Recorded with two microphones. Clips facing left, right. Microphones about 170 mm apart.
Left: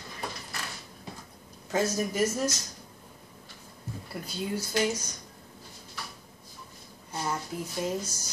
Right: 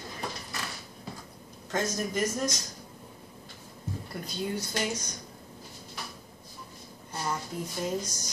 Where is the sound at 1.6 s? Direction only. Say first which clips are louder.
Left 3 dB; 10° left (ahead or behind).